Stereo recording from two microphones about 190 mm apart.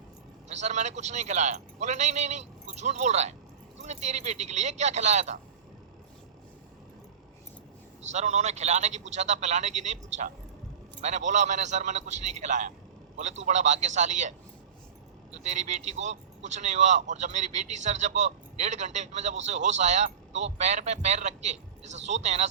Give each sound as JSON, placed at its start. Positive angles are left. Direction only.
{"t": 0.4, "sound": "speech", "side_deg": -35}
{"t": 8.1, "sound": "speech", "side_deg": -35}